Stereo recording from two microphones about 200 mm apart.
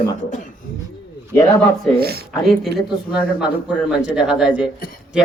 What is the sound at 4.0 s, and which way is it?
Speech, 5° right (ahead or behind).